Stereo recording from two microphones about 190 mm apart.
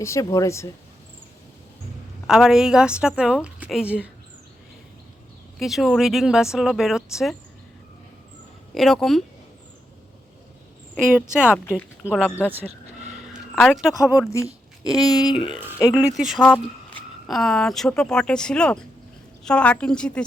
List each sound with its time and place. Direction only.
0.0 s speech: 15° left (ahead or behind)
2.2 s speech: 5° right (ahead or behind)
5.5 s speech: centre (ahead or behind)
8.7 s speech: centre (ahead or behind)
11.4 s speech: 5° right (ahead or behind)
12.5 s speech: 10° right (ahead or behind)
13.1 s a sound: centre (ahead or behind)
14.3 s a sound: 15° left (ahead or behind)
15.1 s speech: 20° left (ahead or behind)
16.0 s speech: centre (ahead or behind)